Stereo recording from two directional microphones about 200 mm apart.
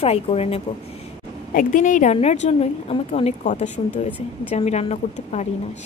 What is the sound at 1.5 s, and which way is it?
Speech, 40° left (ahead or behind).